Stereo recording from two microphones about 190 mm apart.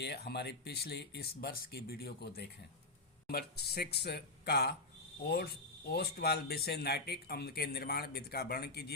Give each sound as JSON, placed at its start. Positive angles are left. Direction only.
{"t": 0.0, "sound": "speech", "side_deg": 60}